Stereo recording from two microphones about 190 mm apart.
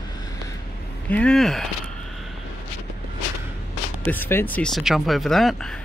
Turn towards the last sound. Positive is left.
turn(degrees=0)  # may be behind; listen again after turning